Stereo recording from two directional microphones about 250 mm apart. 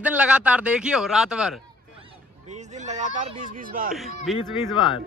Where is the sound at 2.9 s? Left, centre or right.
Right.